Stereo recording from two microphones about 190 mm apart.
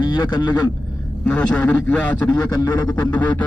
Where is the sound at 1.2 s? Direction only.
5° left (ahead or behind).